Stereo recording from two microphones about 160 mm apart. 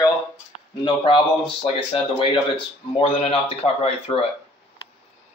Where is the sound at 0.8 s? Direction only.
30° left (ahead or behind).